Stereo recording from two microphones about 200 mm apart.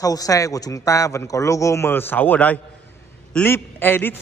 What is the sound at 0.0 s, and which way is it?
A man's voice, 15° left (ahead or behind).